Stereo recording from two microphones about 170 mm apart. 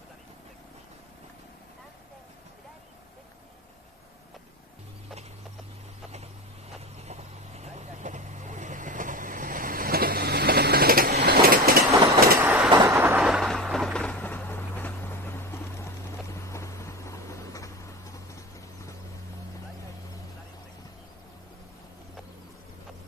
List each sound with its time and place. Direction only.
7.1 s vehicle: 40° right (ahead or behind); by 11.8 s 60° right (ahead or behind)
11.8 s train: 20° right (ahead or behind)
12.7 s vehicle: 15° right (ahead or behind)
13.2 s a sound: centre (ahead or behind); by 18.2 s 20° left (ahead or behind)